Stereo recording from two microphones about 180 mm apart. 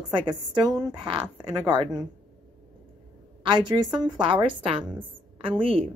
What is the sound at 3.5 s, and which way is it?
A woman's voice, 25° right (ahead or behind).